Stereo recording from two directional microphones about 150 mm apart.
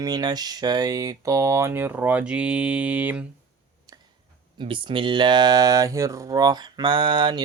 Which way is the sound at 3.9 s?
25° right (ahead or behind).